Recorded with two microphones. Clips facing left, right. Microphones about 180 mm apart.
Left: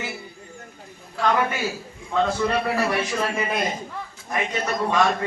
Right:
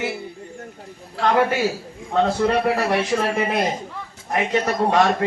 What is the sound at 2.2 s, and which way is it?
Speech, 60° right (ahead or behind).